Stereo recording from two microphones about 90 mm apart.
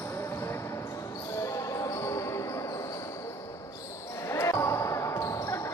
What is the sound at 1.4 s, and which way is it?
Basketball bounce, 35° left (ahead or behind).